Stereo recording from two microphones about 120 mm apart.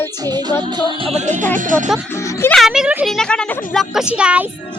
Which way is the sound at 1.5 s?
90° right.